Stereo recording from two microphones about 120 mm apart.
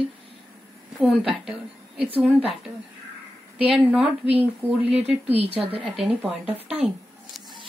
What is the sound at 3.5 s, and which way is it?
Speech, 10° right (ahead or behind).